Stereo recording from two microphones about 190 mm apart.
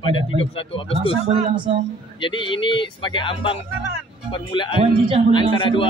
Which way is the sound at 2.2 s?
25° left (ahead or behind).